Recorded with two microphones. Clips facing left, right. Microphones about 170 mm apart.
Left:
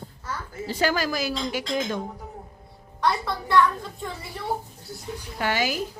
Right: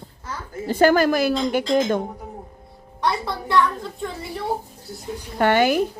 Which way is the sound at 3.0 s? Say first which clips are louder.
Right 1 dB; 20° right (ahead or behind).